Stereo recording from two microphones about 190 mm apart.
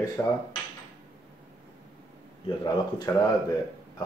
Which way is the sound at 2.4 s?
20° left (ahead or behind).